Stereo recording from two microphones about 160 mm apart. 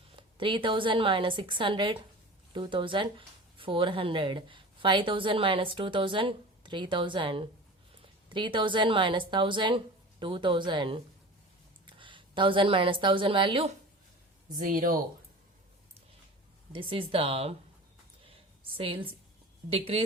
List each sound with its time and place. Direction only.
0.2 s a woman's voice: 30° right (ahead or behind)
14.6 s speech: 60° right (ahead or behind)
16.7 s speech: 35° right (ahead or behind)
18.8 s speech: 35° right (ahead or behind)